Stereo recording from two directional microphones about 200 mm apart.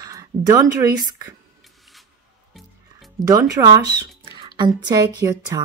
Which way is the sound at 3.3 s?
15° right (ahead or behind).